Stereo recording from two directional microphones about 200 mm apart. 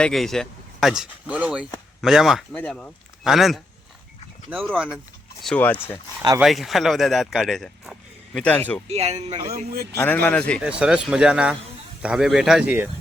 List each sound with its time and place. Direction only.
0.0 s a man's voice: centre (ahead or behind)
8.9 s speech: 30° right (ahead or behind)
9.1 s speech: 20° right (ahead or behind)
9.9 s speech: 10° left (ahead or behind)
10.6 s speech: 5° right (ahead or behind)